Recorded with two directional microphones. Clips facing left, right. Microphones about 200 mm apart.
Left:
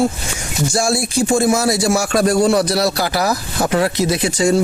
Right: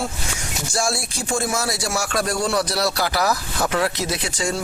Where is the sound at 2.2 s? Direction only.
40° left (ahead or behind).